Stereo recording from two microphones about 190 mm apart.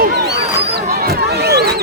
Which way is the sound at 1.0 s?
60° right (ahead or behind).